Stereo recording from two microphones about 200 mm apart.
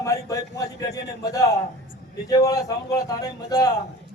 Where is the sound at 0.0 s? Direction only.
15° left (ahead or behind).